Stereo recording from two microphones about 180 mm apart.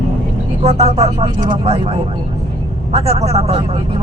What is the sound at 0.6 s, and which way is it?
Speech, 35° right (ahead or behind).